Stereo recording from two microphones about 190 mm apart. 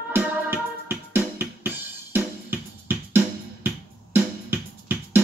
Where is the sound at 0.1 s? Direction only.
10° right (ahead or behind).